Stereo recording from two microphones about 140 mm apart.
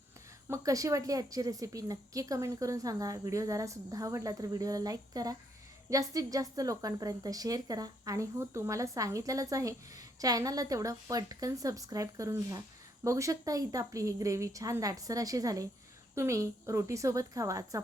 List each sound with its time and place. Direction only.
0.4 s a woman's voice: 25° right (ahead or behind)